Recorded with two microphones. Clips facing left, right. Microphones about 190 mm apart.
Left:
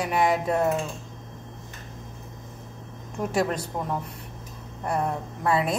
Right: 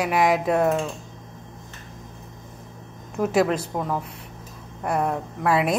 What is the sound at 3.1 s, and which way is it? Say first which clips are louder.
A woman's voice: right 5 dB; 70° right (ahead or behind).